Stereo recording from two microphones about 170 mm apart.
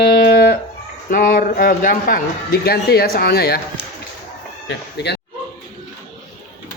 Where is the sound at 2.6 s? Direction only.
65° left (ahead or behind).